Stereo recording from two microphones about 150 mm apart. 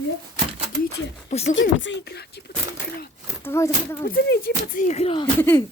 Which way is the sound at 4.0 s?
75° left (ahead or behind).